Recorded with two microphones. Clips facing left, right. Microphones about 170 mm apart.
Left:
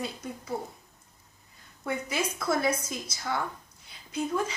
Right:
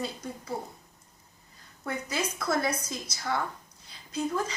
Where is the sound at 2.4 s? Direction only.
5° left (ahead or behind).